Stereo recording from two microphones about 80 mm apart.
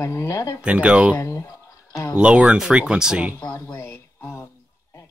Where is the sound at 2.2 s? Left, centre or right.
Centre.